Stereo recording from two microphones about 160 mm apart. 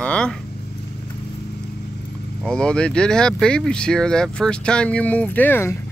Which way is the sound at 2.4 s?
5° left (ahead or behind).